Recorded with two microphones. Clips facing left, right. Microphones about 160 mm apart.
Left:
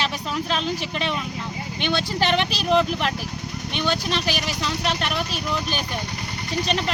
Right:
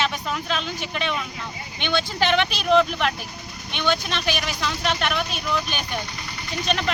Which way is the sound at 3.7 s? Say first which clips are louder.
Even; 35° left (ahead or behind).